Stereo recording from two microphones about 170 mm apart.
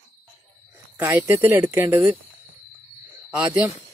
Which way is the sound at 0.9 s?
15° right (ahead or behind).